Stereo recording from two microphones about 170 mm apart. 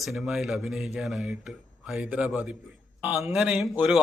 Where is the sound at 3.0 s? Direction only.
15° right (ahead or behind).